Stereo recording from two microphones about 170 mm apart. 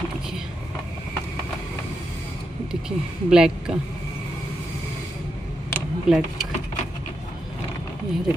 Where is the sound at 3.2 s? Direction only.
5° right (ahead or behind).